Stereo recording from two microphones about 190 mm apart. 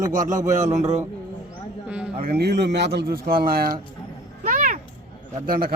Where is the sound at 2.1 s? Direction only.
55° right (ahead or behind).